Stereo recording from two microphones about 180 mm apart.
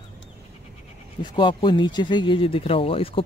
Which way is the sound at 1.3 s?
25° left (ahead or behind).